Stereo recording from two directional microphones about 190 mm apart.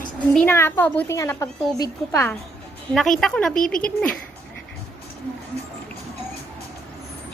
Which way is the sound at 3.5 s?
45° left (ahead or behind).